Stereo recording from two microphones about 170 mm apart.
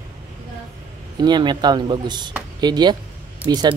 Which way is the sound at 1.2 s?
25° right (ahead or behind).